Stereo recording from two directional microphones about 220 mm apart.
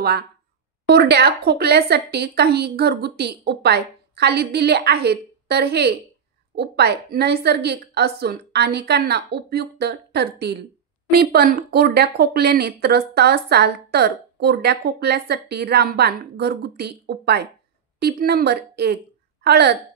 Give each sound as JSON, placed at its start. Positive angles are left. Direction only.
{"t": 0.8, "sound": "speech", "side_deg": -45}